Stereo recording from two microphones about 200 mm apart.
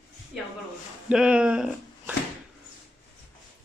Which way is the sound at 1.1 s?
5° right (ahead or behind).